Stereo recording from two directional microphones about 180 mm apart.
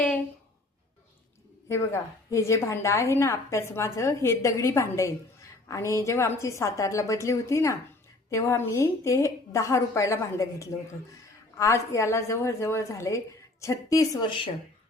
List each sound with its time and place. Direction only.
1.7 s a woman's voice: 15° left (ahead or behind)